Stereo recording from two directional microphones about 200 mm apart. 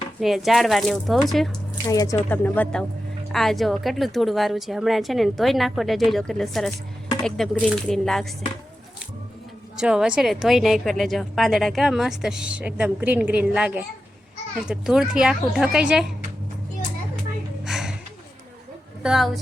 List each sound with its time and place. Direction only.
0.2 s a woman's voice: centre (ahead or behind)
1.9 s a woman's voice: 15° left (ahead or behind); by 8.4 s centre (ahead or behind)
9.7 s a woman's voice: 5° right (ahead or behind)
17.6 s a sound: 5° right (ahead or behind)
19.0 s a woman's voice: centre (ahead or behind)